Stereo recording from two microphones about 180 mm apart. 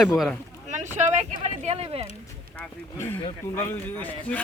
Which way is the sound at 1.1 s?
40° right (ahead or behind).